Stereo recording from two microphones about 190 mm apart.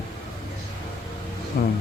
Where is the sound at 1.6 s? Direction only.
60° left (ahead or behind).